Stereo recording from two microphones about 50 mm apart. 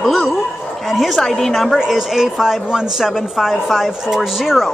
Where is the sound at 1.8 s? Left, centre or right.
Centre.